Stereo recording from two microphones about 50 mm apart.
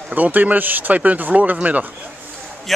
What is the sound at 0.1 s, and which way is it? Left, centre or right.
Speech, right.